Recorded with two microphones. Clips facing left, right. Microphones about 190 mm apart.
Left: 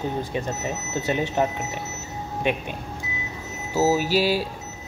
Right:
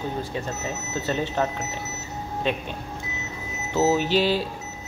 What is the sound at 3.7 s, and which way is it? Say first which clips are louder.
Speech: even; 10° left (ahead or behind).